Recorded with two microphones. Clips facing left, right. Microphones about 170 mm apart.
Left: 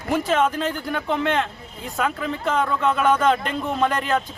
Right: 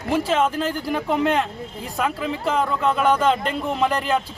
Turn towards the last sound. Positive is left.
turn(degrees=0)  # may be behind; listen again after turning